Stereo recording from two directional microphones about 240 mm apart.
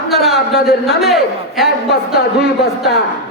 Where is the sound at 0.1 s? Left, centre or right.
Centre.